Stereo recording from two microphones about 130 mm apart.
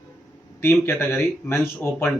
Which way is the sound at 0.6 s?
15° left (ahead or behind).